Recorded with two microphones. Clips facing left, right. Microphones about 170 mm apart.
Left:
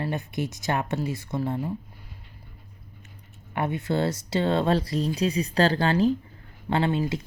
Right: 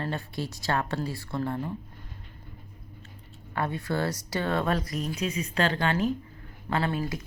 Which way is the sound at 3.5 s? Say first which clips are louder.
Left 3 dB; 20° left (ahead or behind).